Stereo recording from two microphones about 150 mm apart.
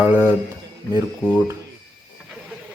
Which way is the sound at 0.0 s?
15° right (ahead or behind).